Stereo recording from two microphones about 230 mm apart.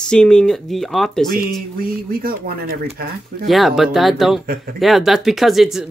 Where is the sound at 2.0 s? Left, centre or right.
Right.